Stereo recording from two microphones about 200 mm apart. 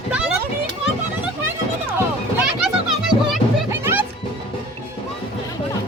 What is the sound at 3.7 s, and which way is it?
Music, 10° right (ahead or behind).